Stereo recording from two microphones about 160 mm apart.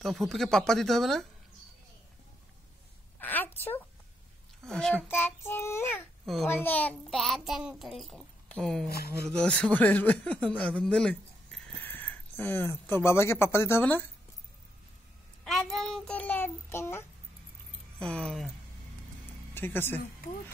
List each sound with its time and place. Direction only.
0.0 s a child's voice: centre (ahead or behind)
3.2 s a sound: 10° left (ahead or behind)
4.6 s a child's voice: 5° left (ahead or behind)
5.0 s speech: 15° left (ahead or behind)
6.2 s a child's voice: centre (ahead or behind)
8.8 s speech: 75° left (ahead or behind)
9.3 s speech: 5° left (ahead or behind)
15.4 s child singing: centre (ahead or behind)
17.9 s a child's voice: 5° left (ahead or behind)
19.5 s speech: 15° left (ahead or behind)